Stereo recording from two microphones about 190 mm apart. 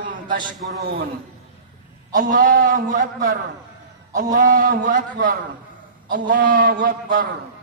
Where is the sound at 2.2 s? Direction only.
40° right (ahead or behind).